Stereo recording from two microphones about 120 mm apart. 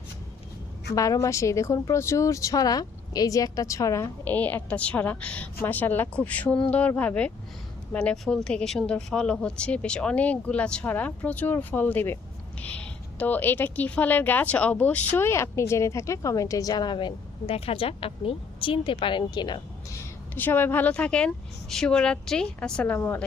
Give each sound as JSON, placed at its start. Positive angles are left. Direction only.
{"t": 0.9, "sound": "speech", "side_deg": 30}
{"t": 4.2, "sound": "a woman's voice", "side_deg": 15}
{"t": 17.5, "sound": "speech", "side_deg": 55}
{"t": 20.3, "sound": "a woman's voice", "side_deg": 15}